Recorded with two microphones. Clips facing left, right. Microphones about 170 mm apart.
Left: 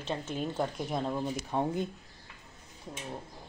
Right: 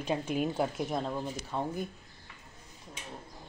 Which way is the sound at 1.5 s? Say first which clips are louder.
Left 3 dB; 25° left (ahead or behind).